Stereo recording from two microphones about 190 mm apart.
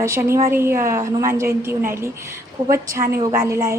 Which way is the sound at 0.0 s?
15° right (ahead or behind).